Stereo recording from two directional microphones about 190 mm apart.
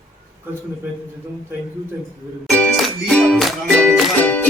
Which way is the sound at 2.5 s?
5° left (ahead or behind).